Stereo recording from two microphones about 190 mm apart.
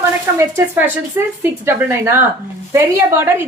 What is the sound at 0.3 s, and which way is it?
A woman's voice, 15° right (ahead or behind).